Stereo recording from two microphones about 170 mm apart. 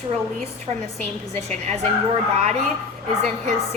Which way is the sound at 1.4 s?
40° right (ahead or behind).